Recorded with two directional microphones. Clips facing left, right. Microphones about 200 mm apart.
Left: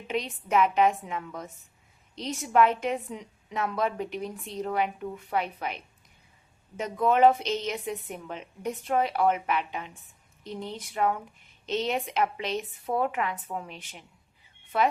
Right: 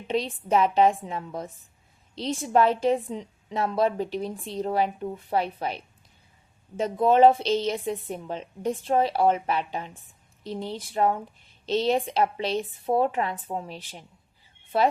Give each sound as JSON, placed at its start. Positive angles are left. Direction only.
{"t": 0.1, "sound": "a woman's voice", "side_deg": -30}